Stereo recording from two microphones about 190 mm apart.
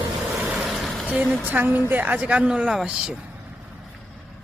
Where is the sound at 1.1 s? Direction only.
10° right (ahead or behind).